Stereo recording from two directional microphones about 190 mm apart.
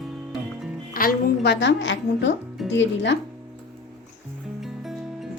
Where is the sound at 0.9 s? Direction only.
55° left (ahead or behind); by 3.1 s 70° left (ahead or behind).